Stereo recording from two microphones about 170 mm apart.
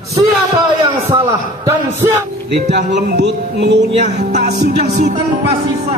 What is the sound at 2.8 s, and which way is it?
Speech, 85° right.